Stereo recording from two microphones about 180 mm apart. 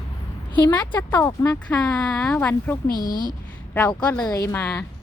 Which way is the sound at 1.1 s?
20° left (ahead or behind).